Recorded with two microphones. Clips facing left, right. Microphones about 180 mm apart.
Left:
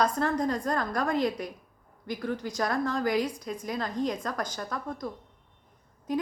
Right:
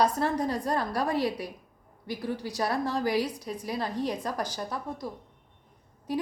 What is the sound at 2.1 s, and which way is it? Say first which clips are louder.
A woman's voice: left 1 dB; 15° right (ahead or behind).